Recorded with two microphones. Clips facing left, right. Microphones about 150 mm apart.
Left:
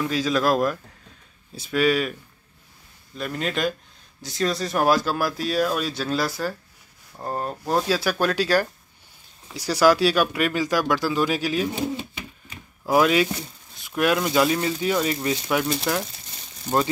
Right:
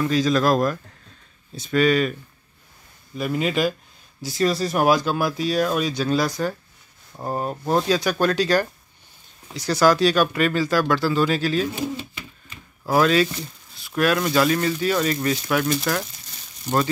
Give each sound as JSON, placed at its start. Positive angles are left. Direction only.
{"t": 0.0, "sound": "speech", "side_deg": 5}
{"t": 3.2, "sound": "speech", "side_deg": -5}
{"t": 7.2, "sound": "speech", "side_deg": -10}
{"t": 7.7, "sound": "speech", "side_deg": 5}
{"t": 12.4, "sound": "a sound", "side_deg": 15}
{"t": 13.7, "sound": "speech", "side_deg": 20}